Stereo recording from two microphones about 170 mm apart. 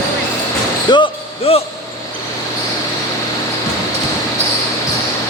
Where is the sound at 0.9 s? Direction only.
25° left (ahead or behind).